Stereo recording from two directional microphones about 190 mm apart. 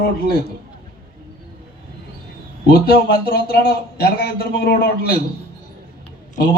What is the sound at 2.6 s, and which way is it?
A man's voice, 55° left (ahead or behind).